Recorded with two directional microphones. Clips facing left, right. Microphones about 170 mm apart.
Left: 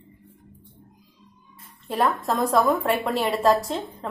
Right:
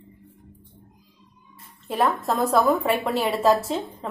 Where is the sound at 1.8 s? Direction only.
Centre (ahead or behind).